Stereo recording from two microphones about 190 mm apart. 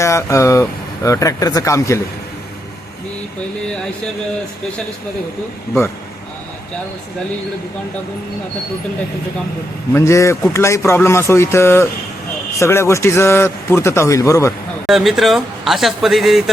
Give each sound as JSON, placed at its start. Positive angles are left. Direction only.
{"t": 0.0, "sound": "a man's voice", "side_deg": 15}
{"t": 9.9, "sound": "a man's voice", "side_deg": 15}
{"t": 14.8, "sound": "a man's voice", "side_deg": 0}